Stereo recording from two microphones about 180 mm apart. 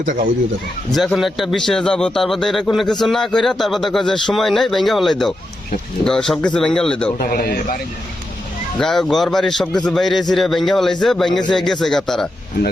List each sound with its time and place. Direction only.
0.0 s speech: 45° right (ahead or behind)
0.9 s speech: centre (ahead or behind)
7.2 s a man's voice: 55° left (ahead or behind)
8.8 s speech: centre (ahead or behind)